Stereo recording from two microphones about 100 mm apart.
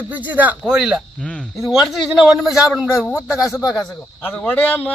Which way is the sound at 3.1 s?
30° left (ahead or behind).